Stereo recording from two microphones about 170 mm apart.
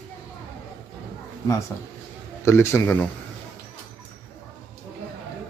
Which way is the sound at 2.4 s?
15° left (ahead or behind).